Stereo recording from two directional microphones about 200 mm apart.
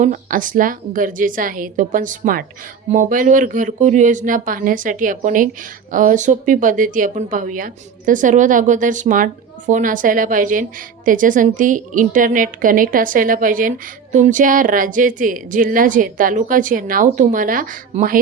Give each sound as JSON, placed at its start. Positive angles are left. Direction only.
{"t": 0.0, "sound": "speech", "side_deg": -40}